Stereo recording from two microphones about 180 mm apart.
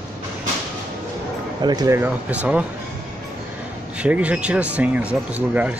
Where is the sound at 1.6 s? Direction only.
20° right (ahead or behind).